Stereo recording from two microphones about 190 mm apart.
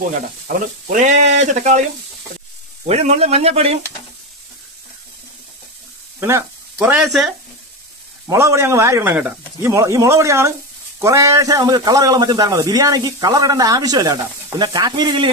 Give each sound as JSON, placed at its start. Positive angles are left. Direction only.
{"t": 0.1, "sound": "speech", "side_deg": -45}
{"t": 2.9, "sound": "speech", "side_deg": -35}
{"t": 6.1, "sound": "speech", "side_deg": -15}
{"t": 6.8, "sound": "speech", "side_deg": 0}
{"t": 8.3, "sound": "a man's voice", "side_deg": -15}